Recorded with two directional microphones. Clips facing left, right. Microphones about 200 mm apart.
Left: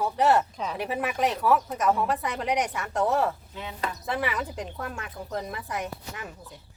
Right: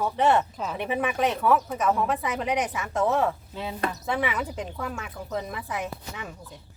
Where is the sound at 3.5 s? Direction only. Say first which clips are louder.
Right 5 dB; 30° right (ahead or behind).